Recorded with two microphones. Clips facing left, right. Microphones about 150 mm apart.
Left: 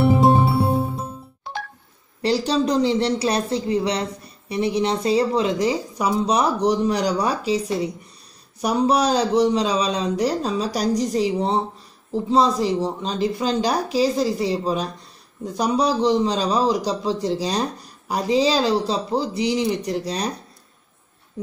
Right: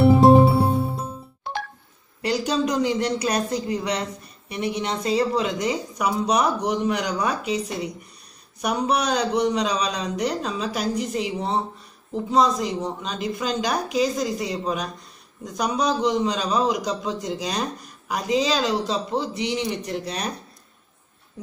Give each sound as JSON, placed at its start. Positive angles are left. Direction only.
{"t": 2.2, "sound": "speech", "side_deg": 35}